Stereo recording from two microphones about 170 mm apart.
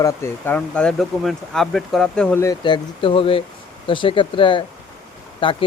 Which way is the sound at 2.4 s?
30° left (ahead or behind).